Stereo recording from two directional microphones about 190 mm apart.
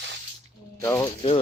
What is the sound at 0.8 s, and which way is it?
Speech, 15° left (ahead or behind).